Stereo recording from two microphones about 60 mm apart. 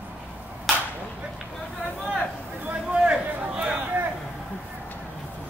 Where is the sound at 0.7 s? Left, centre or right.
Centre.